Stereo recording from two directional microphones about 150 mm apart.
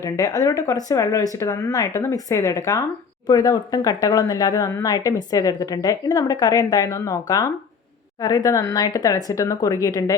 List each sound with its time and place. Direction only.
0.0 s speech: 25° left (ahead or behind)